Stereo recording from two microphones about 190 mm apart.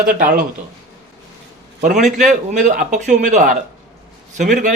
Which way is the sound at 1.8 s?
40° right (ahead or behind).